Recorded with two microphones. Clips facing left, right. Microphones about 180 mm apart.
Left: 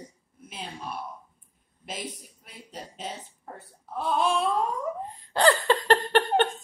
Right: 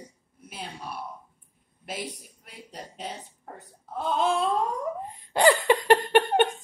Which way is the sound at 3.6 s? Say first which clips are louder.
Even; 20° right (ahead or behind).